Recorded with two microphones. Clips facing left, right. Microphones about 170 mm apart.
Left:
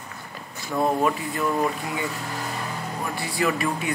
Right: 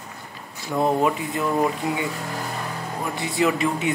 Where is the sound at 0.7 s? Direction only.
20° right (ahead or behind).